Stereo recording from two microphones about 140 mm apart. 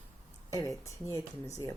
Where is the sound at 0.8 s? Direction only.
20° left (ahead or behind).